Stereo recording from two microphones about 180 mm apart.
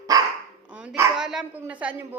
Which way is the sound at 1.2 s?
5° right (ahead or behind).